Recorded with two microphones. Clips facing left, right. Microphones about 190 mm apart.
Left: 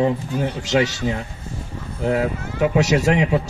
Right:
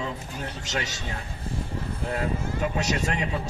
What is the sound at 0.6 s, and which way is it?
Speech, 70° left (ahead or behind).